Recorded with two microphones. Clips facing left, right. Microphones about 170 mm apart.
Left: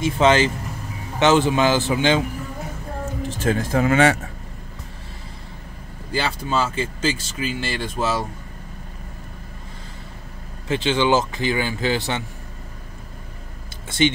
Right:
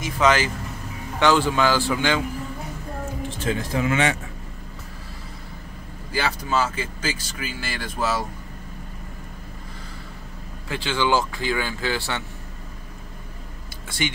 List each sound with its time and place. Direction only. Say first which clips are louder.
0.0 s speech: left 4 dB; 25° left (ahead or behind)
3.3 s speech: left 5 dB; 45° left (ahead or behind)
6.1 s speech: left 1 dB; 25° left (ahead or behind)
10.7 s speech: left 4 dB; 20° left (ahead or behind)
13.8 s speech: left 8 dB; 25° left (ahead or behind)